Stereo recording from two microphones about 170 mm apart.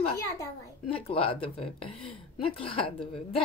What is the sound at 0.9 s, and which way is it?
Speech, 35° left (ahead or behind).